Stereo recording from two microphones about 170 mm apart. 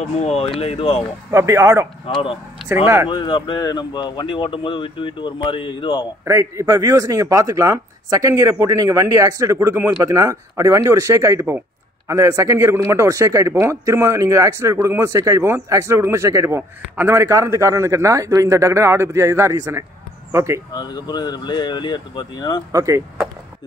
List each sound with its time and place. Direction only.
0.0 s speech: 40° left (ahead or behind)
1.3 s a man's voice: 15° right (ahead or behind)
2.0 s speech: 30° left (ahead or behind)
2.6 s speech: 10° right (ahead or behind)
3.1 s speech: 30° left (ahead or behind)
6.2 s a man's voice: 15° right (ahead or behind)
20.7 s speech: 25° left (ahead or behind)
22.7 s a man's voice: 20° right (ahead or behind)